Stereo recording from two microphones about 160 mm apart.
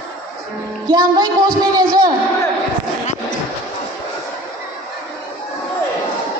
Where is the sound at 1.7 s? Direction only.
25° right (ahead or behind).